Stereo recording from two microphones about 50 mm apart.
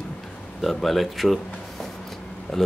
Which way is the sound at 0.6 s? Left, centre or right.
Centre.